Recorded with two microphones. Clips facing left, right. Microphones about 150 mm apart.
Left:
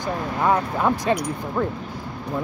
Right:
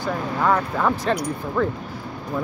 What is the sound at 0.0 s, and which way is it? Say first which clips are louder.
Speech: even; 15° left (ahead or behind).